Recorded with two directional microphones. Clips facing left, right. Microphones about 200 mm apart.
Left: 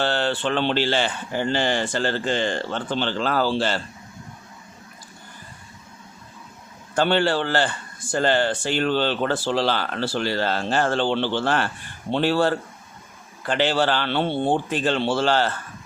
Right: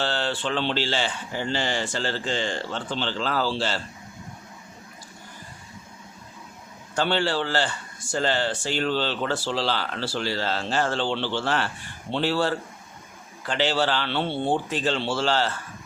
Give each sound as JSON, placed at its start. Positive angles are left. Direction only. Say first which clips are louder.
{"t": 0.0, "sound": "speech", "louder": "left 4 dB", "side_deg": 55}
{"t": 6.9, "sound": "speech", "louder": "left 4 dB", "side_deg": 55}